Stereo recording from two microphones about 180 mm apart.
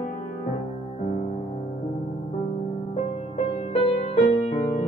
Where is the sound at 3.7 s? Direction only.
35° left (ahead or behind).